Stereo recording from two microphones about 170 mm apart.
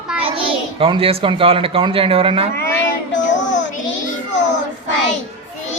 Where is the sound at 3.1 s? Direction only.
90° left.